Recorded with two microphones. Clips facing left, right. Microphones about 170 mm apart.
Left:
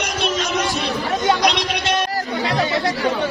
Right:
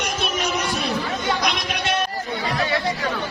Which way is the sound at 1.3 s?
90° left.